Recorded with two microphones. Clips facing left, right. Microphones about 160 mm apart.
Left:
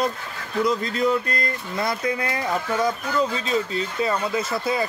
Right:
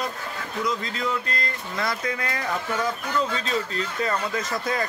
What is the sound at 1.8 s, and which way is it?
Speech, 25° left (ahead or behind).